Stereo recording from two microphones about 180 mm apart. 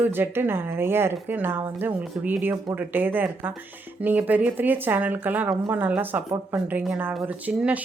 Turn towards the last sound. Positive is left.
turn(degrees=-10)  # may be behind; listen again after turning